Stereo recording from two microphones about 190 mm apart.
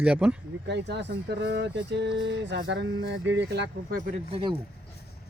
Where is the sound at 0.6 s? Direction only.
65° right (ahead or behind).